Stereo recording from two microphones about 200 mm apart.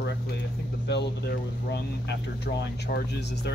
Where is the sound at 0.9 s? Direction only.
55° left (ahead or behind).